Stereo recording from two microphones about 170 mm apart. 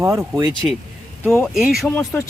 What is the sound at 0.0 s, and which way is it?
Speech, 15° right (ahead or behind).